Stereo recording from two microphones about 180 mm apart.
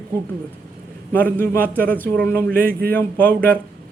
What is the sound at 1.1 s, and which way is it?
A man's voice, 10° left (ahead or behind).